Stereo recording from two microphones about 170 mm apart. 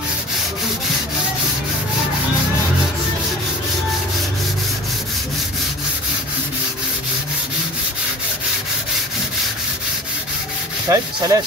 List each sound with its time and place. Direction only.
10.9 s rub: 20° right (ahead or behind)